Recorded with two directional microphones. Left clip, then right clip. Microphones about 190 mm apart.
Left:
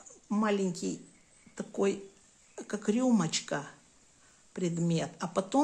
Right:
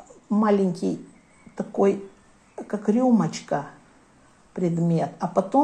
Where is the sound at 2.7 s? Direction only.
40° left (ahead or behind).